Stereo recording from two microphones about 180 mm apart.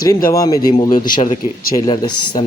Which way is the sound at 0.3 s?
20° left (ahead or behind).